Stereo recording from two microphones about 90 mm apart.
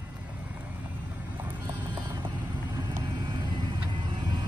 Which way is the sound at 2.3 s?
55° right (ahead or behind).